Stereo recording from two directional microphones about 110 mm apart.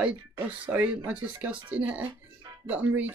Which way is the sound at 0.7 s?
10° right (ahead or behind).